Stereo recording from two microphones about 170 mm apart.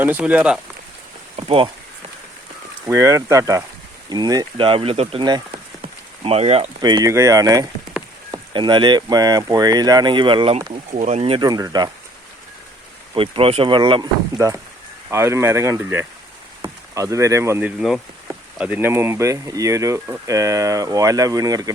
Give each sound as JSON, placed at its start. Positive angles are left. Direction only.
{"t": 0.0, "sound": "speech", "side_deg": -10}
{"t": 1.4, "sound": "speech", "side_deg": -30}
{"t": 2.8, "sound": "speech", "side_deg": -15}
{"t": 6.8, "sound": "speech", "side_deg": -25}
{"t": 11.4, "sound": "speech", "side_deg": -20}
{"t": 13.1, "sound": "speech", "side_deg": -30}
{"t": 15.1, "sound": "speech", "side_deg": -15}
{"t": 17.7, "sound": "speech", "side_deg": 0}